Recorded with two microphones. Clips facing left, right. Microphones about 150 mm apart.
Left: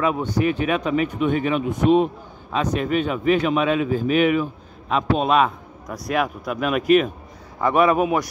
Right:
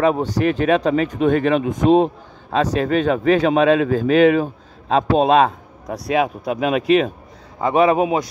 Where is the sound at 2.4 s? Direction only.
40° right (ahead or behind).